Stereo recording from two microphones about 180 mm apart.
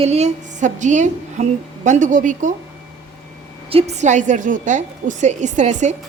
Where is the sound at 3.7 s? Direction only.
40° right (ahead or behind).